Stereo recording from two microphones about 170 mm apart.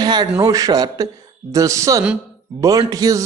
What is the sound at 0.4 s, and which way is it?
A man's voice, 20° right (ahead or behind).